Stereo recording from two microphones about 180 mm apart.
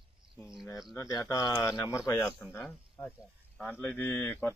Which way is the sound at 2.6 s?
Centre (ahead or behind).